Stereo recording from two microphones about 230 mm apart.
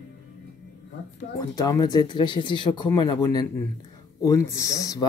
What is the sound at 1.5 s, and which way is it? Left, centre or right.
Speech, centre.